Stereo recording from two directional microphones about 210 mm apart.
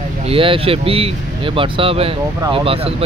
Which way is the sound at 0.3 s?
25° right (ahead or behind).